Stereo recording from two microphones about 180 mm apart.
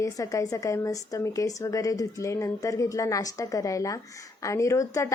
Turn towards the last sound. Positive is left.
turn(degrees=15)  # may be behind; listen again after turning